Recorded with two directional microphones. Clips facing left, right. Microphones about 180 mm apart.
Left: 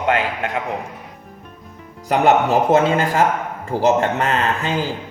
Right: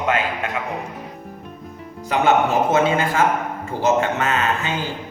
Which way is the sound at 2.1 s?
35° left (ahead or behind).